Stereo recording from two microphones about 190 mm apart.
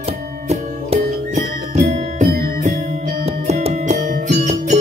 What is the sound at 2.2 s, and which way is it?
Music, 55° right (ahead or behind).